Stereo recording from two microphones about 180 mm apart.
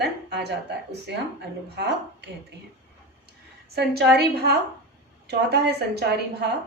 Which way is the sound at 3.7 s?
65° right (ahead or behind).